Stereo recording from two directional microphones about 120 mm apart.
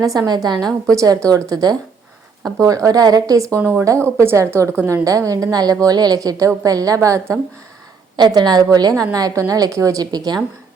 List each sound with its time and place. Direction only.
0.0 s a woman's voice: 30° right (ahead or behind)